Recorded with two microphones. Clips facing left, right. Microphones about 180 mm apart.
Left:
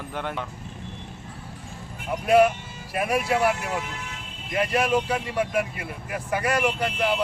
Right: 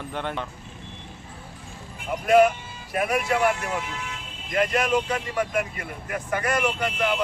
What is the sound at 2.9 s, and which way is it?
Speech, 5° left (ahead or behind).